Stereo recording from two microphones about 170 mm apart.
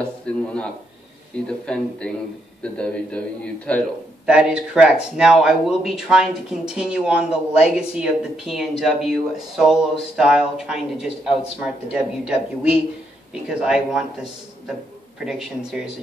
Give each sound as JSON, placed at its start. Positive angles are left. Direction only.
{"t": 0.3, "sound": "speech", "side_deg": 5}
{"t": 4.3, "sound": "speech", "side_deg": -5}
{"t": 7.2, "sound": "speech", "side_deg": 40}
{"t": 7.7, "sound": "speech", "side_deg": -5}
{"t": 15.1, "sound": "speech", "side_deg": -5}